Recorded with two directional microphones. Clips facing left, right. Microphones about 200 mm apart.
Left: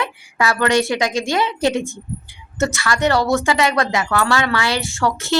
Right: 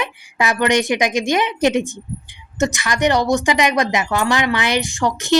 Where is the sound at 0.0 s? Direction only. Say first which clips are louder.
Even; 20° right (ahead or behind).